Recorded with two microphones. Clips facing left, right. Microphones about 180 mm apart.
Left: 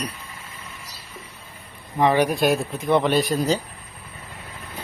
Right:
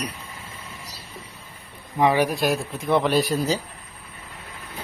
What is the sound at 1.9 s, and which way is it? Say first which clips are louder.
A man's voice: left 1 dB; 10° right (ahead or behind).